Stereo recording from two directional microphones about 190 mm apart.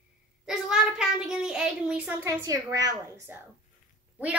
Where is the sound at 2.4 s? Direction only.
20° right (ahead or behind).